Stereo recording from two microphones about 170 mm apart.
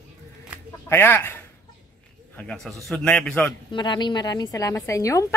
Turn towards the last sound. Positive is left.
turn(degrees=20)  # may be behind; listen again after turning